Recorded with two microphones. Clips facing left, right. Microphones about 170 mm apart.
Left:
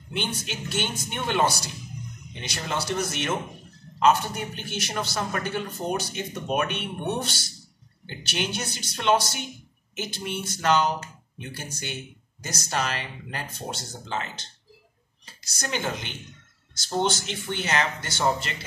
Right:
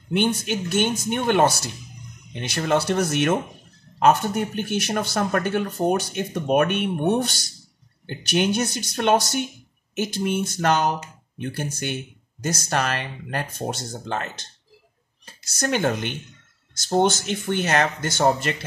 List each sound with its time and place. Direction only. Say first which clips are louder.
0.1 s speech: right 9 dB; 55° right (ahead or behind)